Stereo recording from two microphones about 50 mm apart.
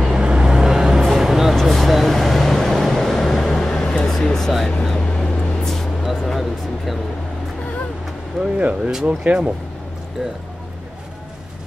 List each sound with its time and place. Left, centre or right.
0.0 s vehicle: centre
4.1 s a sound: centre
4.8 s vehicle: centre
6.0 s music: centre
8.4 s speech: right